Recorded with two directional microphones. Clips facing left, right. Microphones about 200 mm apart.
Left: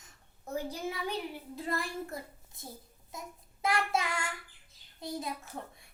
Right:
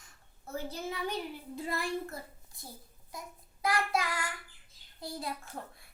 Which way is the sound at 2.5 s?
20° left (ahead or behind).